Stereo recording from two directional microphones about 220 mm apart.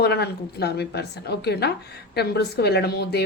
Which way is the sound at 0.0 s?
45° left (ahead or behind).